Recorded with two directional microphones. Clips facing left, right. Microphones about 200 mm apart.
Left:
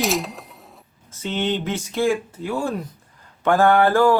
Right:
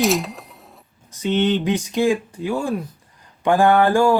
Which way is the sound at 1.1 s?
15° right (ahead or behind).